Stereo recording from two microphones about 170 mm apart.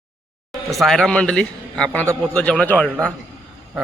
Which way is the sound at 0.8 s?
Centre (ahead or behind).